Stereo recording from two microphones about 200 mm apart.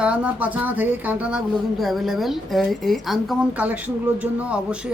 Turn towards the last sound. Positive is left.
turn(degrees=-5)  # may be behind; listen again after turning